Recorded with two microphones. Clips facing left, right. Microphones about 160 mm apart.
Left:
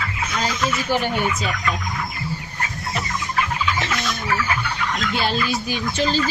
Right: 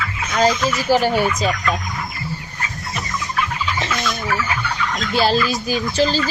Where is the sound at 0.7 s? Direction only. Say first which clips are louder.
Right 5 dB; 35° right (ahead or behind).